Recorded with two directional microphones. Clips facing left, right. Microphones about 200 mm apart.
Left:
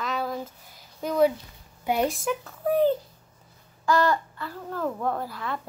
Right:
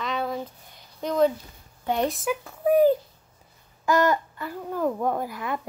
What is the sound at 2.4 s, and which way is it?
Speech, 15° right (ahead or behind).